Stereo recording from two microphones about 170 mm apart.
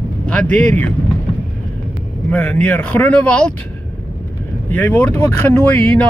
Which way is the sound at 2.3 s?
10° left (ahead or behind).